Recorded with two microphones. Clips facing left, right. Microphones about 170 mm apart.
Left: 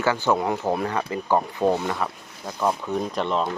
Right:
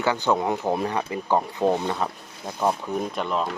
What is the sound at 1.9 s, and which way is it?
Speech, 20° right (ahead or behind).